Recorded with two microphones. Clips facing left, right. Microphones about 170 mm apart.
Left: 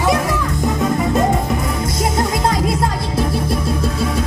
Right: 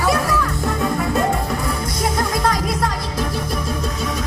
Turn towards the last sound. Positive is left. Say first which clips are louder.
# left 3 dB
turn(degrees=25)  # may be behind; listen again after turning